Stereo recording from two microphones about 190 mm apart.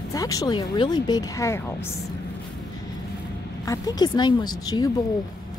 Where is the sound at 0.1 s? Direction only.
20° left (ahead or behind).